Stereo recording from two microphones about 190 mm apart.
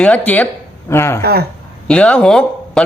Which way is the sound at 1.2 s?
55° right (ahead or behind).